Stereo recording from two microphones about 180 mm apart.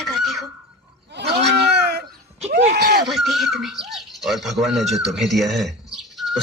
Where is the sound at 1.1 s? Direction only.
70° right (ahead or behind).